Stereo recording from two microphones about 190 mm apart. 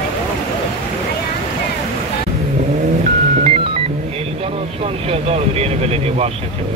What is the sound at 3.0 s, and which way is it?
Music, 35° right (ahead or behind).